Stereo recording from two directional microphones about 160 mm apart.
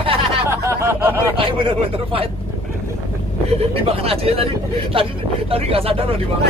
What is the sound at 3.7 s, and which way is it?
Speech, 35° right (ahead or behind).